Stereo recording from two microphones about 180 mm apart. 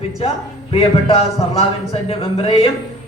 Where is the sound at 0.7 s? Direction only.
35° left (ahead or behind).